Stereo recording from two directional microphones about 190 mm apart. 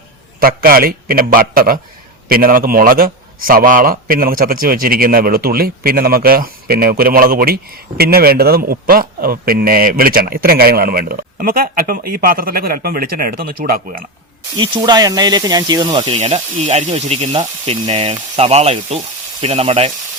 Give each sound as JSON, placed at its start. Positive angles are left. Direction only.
{"t": 0.3, "sound": "a man's voice", "side_deg": -50}
{"t": 14.6, "sound": "speech", "side_deg": -25}